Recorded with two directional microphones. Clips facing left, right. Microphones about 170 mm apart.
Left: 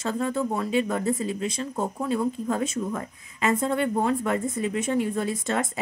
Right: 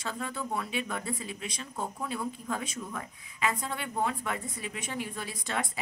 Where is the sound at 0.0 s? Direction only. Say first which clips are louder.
Left 10 dB; 45° left (ahead or behind).